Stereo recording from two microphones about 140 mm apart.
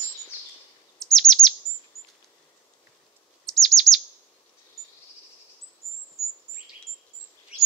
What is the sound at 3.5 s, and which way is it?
Chirp, centre (ahead or behind).